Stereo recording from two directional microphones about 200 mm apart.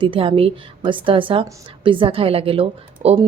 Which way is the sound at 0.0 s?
25° right (ahead or behind).